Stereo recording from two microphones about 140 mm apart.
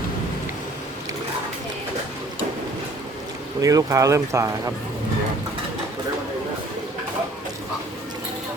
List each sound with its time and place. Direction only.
3.6 s speech: 25° right (ahead or behind)